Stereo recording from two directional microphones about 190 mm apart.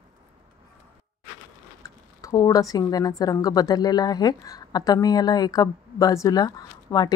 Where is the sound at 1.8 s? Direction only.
15° left (ahead or behind).